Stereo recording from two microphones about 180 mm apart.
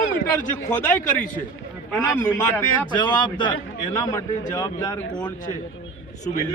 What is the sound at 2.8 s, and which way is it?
A man's voice, 25° left (ahead or behind).